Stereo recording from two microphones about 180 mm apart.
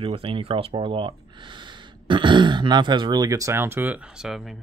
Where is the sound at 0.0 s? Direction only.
30° right (ahead or behind).